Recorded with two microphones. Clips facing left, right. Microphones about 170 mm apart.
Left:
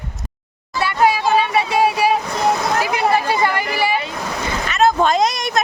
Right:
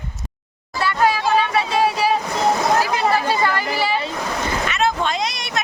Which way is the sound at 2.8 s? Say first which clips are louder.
Left 1 dB; 15° left (ahead or behind).